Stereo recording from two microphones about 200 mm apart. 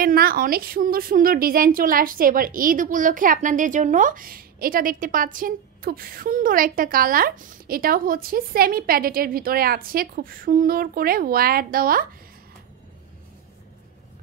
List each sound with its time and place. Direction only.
0.0 s a woman's voice: 45° right (ahead or behind)